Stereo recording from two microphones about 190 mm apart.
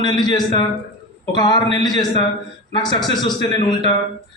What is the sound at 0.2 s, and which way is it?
A man's voice, 20° left (ahead or behind).